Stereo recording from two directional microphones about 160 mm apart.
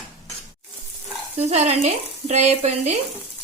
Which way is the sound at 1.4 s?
40° right (ahead or behind).